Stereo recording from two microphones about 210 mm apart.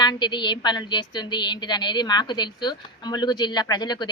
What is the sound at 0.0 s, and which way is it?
A woman's voice, 20° left (ahead or behind).